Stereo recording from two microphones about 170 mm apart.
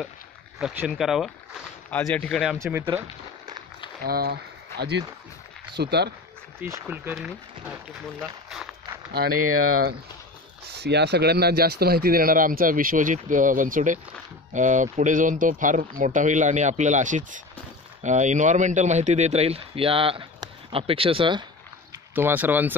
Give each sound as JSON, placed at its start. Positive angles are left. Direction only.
{"t": 0.6, "sound": "speech", "side_deg": -5}
{"t": 1.9, "sound": "speech", "side_deg": 10}
{"t": 2.6, "sound": "speech", "side_deg": -15}
{"t": 4.0, "sound": "speech", "side_deg": -65}
{"t": 6.6, "sound": "speech", "side_deg": -15}
{"t": 8.2, "sound": "run", "side_deg": 0}
{"t": 10.7, "sound": "speech", "side_deg": -80}
{"t": 22.1, "sound": "speech", "side_deg": -10}